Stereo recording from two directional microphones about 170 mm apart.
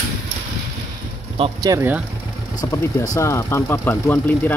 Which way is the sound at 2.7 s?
20° left (ahead or behind).